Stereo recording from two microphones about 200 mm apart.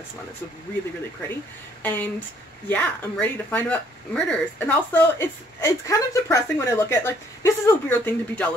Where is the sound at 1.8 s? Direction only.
10° left (ahead or behind).